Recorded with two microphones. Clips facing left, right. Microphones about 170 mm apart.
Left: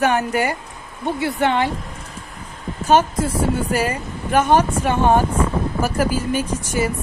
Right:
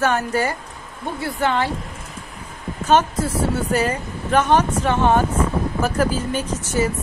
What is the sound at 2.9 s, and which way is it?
Speech, 10° left (ahead or behind).